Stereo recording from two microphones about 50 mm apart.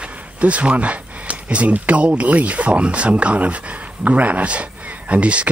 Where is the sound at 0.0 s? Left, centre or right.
Right.